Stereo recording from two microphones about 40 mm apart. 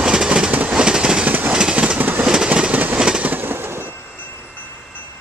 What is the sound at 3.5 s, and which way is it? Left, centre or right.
Train, right.